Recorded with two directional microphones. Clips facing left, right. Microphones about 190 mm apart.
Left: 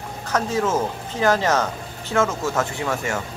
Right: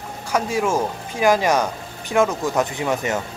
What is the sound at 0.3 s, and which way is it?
Speech, 10° right (ahead or behind).